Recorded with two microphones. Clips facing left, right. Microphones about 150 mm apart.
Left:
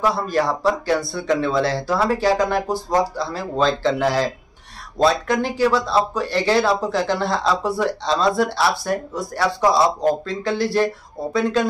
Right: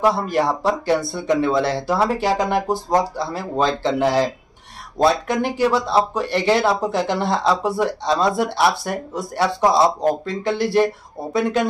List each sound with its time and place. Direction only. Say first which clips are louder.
0.0 s speech: right 2 dB; 20° right (ahead or behind)